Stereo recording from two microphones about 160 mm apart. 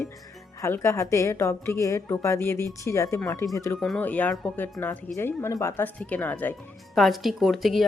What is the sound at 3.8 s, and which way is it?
Speech, 5° left (ahead or behind).